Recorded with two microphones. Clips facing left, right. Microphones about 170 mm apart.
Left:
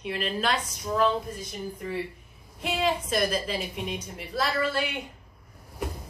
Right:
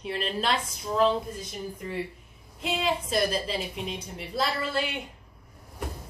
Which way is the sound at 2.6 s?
25° right (ahead or behind).